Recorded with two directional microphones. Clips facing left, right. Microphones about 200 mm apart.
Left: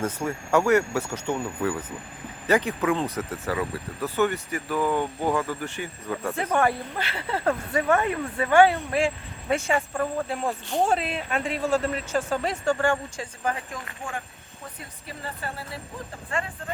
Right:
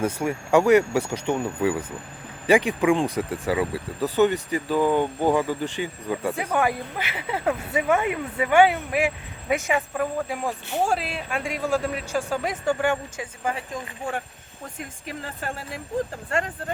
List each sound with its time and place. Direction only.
0.0 s speech: 10° right (ahead or behind)
9.9 s a man's voice: 5° right (ahead or behind)